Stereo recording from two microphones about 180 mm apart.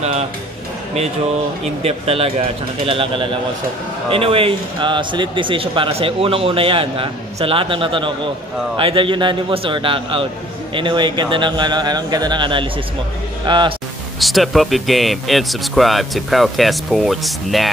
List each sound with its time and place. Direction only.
1.8 s a man's voice: 35° right (ahead or behind)
14.2 s speech: centre (ahead or behind)